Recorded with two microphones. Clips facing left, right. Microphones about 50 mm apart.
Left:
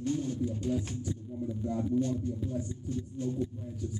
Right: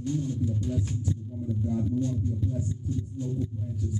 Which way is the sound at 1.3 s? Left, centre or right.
Centre.